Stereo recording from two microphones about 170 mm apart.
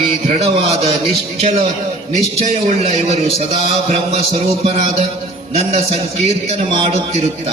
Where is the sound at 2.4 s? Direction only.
40° right (ahead or behind).